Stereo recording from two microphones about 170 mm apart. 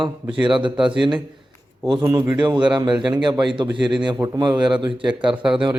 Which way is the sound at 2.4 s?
25° right (ahead or behind).